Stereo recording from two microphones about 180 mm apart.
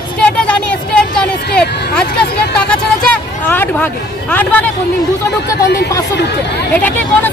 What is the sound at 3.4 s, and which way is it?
Speech, 10° left (ahead or behind).